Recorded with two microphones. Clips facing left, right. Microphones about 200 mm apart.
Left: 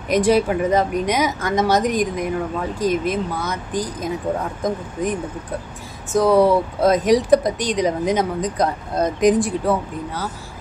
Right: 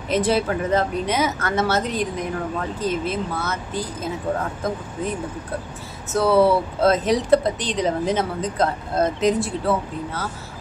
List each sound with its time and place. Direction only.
0.1 s speech: 15° left (ahead or behind)
6.1 s speech: 15° left (ahead or behind)